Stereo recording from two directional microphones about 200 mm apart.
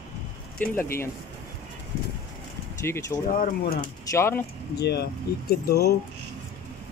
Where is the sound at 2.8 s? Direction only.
15° left (ahead or behind).